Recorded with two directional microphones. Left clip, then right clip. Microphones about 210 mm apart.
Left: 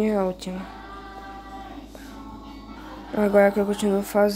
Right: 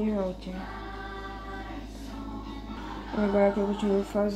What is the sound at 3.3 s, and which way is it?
Speech, 55° left (ahead or behind).